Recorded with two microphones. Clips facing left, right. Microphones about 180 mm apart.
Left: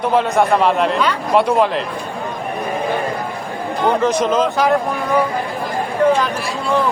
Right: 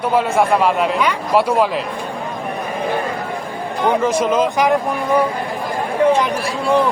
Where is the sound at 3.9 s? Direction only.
10° right (ahead or behind).